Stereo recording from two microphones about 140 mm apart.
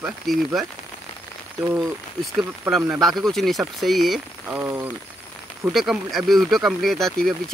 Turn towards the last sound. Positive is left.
turn(degrees=0)  # may be behind; listen again after turning